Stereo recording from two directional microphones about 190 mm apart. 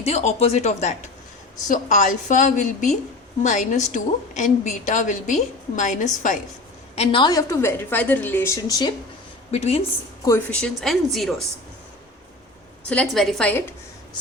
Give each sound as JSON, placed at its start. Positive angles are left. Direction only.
{"t": 0.0, "sound": "a woman's voice", "side_deg": 35}
{"t": 6.9, "sound": "a woman's voice", "side_deg": 30}
{"t": 9.5, "sound": "a woman's voice", "side_deg": 35}
{"t": 10.5, "sound": "speech", "side_deg": 0}
{"t": 12.9, "sound": "a woman's voice", "side_deg": 5}